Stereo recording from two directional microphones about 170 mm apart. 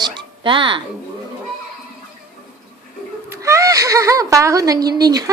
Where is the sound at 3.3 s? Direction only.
20° right (ahead or behind).